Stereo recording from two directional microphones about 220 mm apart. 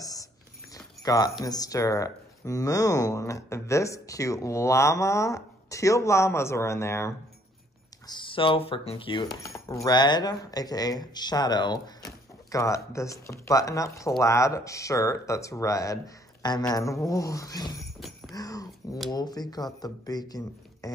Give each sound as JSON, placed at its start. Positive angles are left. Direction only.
{"t": 0.0, "sound": "a sound", "side_deg": 15}
{"t": 1.0, "sound": "speech", "side_deg": 15}
{"t": 8.1, "sound": "speech", "side_deg": 25}
{"t": 17.7, "sound": "jingle bell", "side_deg": 0}
{"t": 18.3, "sound": "dog", "side_deg": 15}
{"t": 19.1, "sound": "speech", "side_deg": 20}